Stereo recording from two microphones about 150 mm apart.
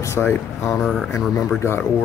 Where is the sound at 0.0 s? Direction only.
15° left (ahead or behind).